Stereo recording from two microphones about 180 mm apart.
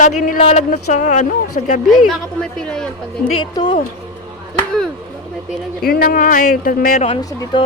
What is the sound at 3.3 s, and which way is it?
Speech, 25° left (ahead or behind).